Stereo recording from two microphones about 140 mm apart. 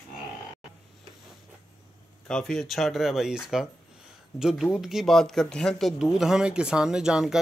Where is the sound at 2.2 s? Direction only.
5° left (ahead or behind).